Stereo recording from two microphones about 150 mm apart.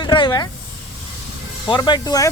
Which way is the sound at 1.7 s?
30° left (ahead or behind).